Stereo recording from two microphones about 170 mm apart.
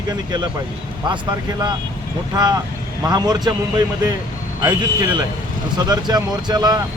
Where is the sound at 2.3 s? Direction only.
25° right (ahead or behind).